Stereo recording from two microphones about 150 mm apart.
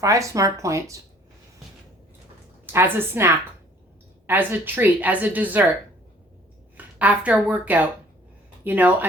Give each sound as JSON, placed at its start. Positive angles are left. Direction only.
{"t": 0.0, "sound": "speech", "side_deg": -20}
{"t": 2.7, "sound": "a woman's voice", "side_deg": -15}
{"t": 6.7, "sound": "a woman's voice", "side_deg": -10}